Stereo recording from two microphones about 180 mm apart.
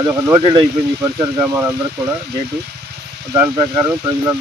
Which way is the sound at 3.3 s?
15° right (ahead or behind).